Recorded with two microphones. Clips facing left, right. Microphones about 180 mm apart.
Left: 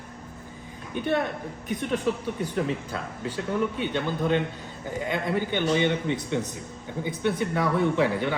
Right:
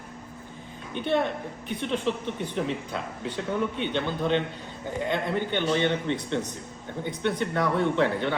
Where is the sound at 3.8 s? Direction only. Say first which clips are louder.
Left 1 dB; 10° left (ahead or behind).